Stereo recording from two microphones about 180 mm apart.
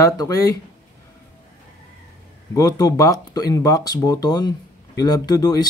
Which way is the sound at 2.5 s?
20° left (ahead or behind).